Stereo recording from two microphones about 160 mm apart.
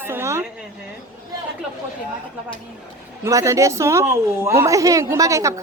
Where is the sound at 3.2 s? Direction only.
20° right (ahead or behind).